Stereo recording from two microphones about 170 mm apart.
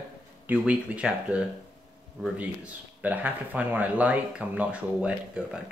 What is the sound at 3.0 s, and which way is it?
Speech, 10° right (ahead or behind).